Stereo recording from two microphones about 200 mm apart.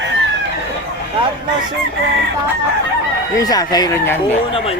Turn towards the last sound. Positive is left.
turn(degrees=15)  # may be behind; listen again after turning